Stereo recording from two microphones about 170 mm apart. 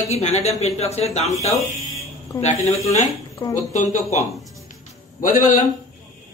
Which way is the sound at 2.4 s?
40° left (ahead or behind).